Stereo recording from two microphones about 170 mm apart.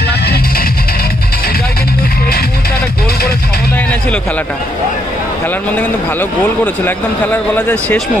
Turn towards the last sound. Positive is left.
turn(degrees=10)  # may be behind; listen again after turning